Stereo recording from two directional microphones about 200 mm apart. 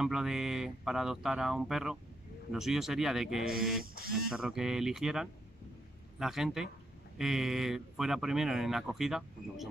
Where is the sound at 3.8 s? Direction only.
45° right (ahead or behind).